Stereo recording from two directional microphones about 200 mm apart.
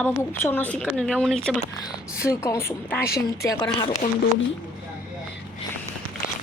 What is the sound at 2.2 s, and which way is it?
Speech, 15° left (ahead or behind).